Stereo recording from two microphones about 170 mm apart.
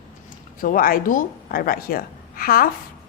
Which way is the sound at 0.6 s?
55° left (ahead or behind).